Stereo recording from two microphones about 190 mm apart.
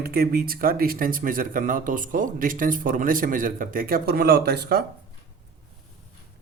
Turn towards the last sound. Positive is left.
turn(degrees=-55)  # may be behind; listen again after turning